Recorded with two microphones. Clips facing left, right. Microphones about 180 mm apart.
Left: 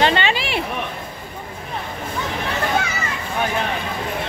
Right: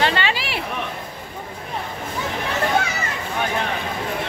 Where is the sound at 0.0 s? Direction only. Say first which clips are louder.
Left 3 dB; 20° left (ahead or behind).